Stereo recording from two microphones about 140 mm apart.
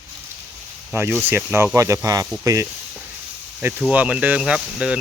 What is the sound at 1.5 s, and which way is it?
Speech, 20° right (ahead or behind).